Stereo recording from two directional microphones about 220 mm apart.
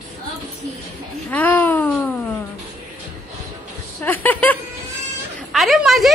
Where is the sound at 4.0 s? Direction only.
10° left (ahead or behind).